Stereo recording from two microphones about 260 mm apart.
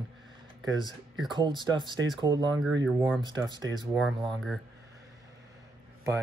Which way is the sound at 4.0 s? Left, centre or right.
Centre.